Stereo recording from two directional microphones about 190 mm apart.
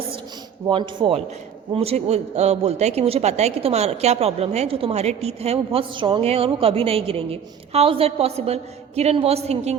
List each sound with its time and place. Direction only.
0.7 s a man's voice: 25° right (ahead or behind)